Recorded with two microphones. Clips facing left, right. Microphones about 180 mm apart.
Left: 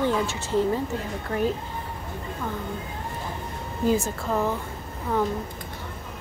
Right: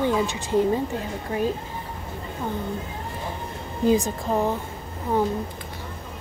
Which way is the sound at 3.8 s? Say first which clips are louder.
Right 3 dB; 15° right (ahead or behind).